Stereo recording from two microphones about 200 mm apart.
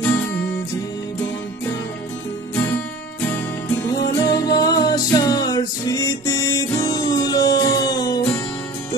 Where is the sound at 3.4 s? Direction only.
10° left (ahead or behind).